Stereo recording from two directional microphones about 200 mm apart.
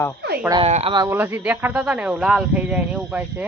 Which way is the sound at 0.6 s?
30° right (ahead or behind).